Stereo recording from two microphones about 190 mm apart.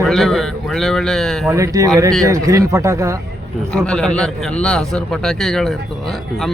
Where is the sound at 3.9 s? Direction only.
5° left (ahead or behind).